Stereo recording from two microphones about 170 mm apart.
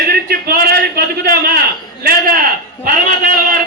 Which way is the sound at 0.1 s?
60° right (ahead or behind).